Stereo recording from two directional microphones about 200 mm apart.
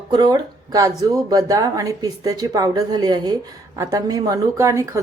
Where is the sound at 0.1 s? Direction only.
20° right (ahead or behind).